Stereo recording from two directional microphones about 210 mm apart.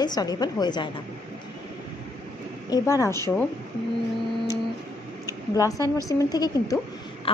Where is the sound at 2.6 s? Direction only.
15° left (ahead or behind).